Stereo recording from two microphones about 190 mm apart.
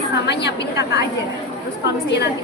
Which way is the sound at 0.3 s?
65° left (ahead or behind).